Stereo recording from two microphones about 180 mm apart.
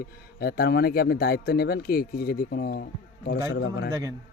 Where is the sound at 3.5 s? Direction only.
70° left (ahead or behind).